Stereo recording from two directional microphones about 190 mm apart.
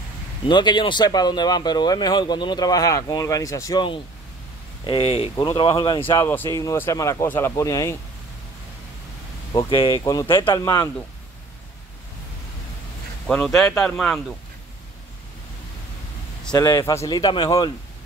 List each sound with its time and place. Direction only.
0.5 s speech: 25° left (ahead or behind)
6.2 s speech: 10° left (ahead or behind)
9.5 s speech: 25° left (ahead or behind)
13.3 s speech: 5° left (ahead or behind)
16.5 s speech: 20° left (ahead or behind)